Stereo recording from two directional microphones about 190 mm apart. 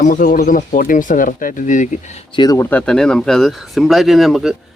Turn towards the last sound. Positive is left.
turn(degrees=0)  # may be behind; listen again after turning